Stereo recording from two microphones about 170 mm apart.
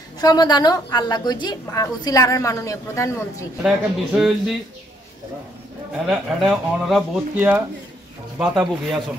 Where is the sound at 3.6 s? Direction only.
5° right (ahead or behind).